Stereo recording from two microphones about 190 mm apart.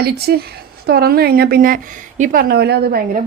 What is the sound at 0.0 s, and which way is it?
A woman's voice, 55° right (ahead or behind).